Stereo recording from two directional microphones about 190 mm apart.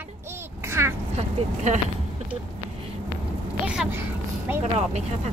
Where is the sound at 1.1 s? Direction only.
35° right (ahead or behind).